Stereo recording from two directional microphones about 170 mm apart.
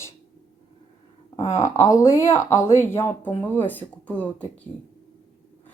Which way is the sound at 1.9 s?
20° left (ahead or behind).